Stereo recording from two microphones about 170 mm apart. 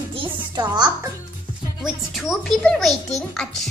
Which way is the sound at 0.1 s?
30° right (ahead or behind).